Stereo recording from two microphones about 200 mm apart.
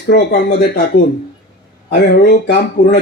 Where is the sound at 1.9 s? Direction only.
55° left (ahead or behind).